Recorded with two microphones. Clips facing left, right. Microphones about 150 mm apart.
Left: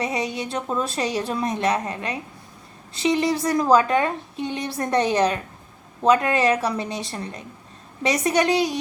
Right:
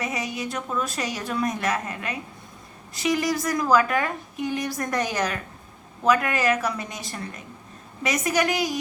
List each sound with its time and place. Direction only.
0.0 s a woman's voice: 30° left (ahead or behind)